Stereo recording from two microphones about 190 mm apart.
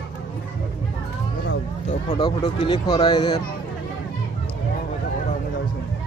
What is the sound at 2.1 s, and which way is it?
Speech, 25° left (ahead or behind).